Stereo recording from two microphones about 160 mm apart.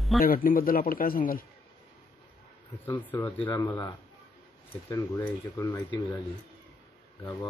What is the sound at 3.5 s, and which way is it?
A man's voice, 15° left (ahead or behind).